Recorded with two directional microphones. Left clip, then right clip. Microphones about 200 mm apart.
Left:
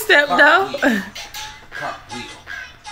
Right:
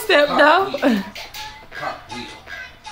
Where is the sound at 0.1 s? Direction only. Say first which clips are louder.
Left 1 dB; 15° right (ahead or behind).